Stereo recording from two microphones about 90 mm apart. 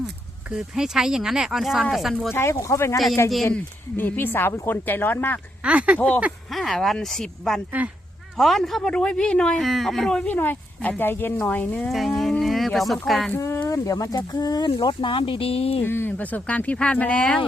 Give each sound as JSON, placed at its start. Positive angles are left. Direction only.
{"t": 0.5, "sound": "speech", "side_deg": -5}
{"t": 2.3, "sound": "speech", "side_deg": 30}
{"t": 3.9, "sound": "speech", "side_deg": 20}
{"t": 5.6, "sound": "speech", "side_deg": -15}
{"t": 6.5, "sound": "speech", "side_deg": 0}
{"t": 9.6, "sound": "speech", "side_deg": 0}
{"t": 10.3, "sound": "speech", "side_deg": 20}
{"t": 11.9, "sound": "speech", "side_deg": 0}
{"t": 13.7, "sound": "speech", "side_deg": 40}
{"t": 14.8, "sound": "speech", "side_deg": 60}
{"t": 15.8, "sound": "speech", "side_deg": 25}